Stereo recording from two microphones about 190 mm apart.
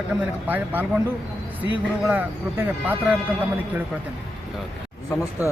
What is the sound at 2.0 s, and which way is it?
Speech, 5° right (ahead or behind).